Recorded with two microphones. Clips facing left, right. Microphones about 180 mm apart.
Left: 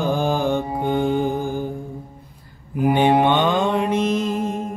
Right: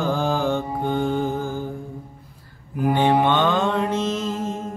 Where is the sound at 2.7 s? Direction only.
20° left (ahead or behind).